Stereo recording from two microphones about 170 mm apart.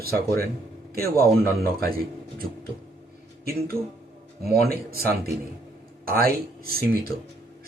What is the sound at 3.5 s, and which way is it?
Speech, 60° right (ahead or behind).